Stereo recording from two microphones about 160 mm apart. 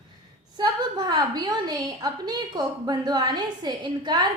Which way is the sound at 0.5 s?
25° right (ahead or behind).